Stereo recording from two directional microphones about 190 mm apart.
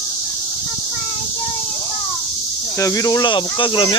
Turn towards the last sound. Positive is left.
turn(degrees=25)  # may be behind; listen again after turning